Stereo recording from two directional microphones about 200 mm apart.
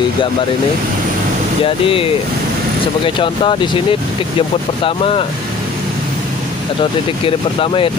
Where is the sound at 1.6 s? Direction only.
25° left (ahead or behind).